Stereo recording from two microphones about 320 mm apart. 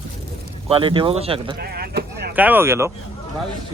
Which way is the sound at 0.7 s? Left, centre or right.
Centre.